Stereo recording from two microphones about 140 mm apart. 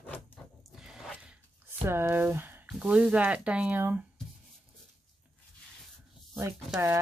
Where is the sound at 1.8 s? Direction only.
15° right (ahead or behind).